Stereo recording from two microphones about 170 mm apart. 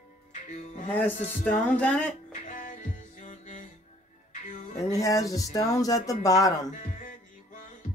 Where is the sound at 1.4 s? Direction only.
5° left (ahead or behind).